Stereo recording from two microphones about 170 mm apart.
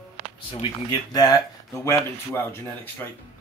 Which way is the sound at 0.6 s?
25° left (ahead or behind).